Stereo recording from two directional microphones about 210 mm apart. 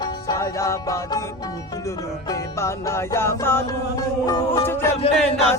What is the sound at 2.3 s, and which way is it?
Music, 15° left (ahead or behind).